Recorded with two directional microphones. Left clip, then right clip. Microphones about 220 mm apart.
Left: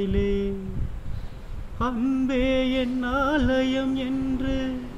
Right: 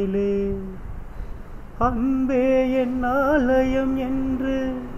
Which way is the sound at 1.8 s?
25° left (ahead or behind).